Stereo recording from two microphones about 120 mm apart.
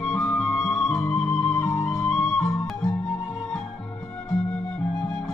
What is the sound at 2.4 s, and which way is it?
Music, 25° left (ahead or behind).